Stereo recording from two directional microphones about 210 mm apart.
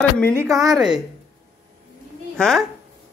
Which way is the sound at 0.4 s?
15° right (ahead or behind).